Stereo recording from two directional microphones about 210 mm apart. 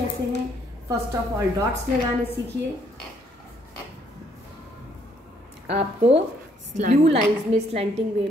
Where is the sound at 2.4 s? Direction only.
60° right (ahead or behind).